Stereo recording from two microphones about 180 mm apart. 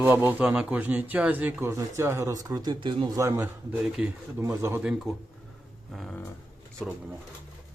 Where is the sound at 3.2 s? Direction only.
15° right (ahead or behind).